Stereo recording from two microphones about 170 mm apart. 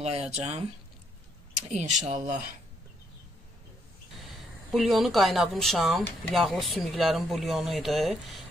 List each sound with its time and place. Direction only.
0.0 s speech: 40° right (ahead or behind)
1.7 s speech: 45° right (ahead or behind)
4.7 s speech: centre (ahead or behind)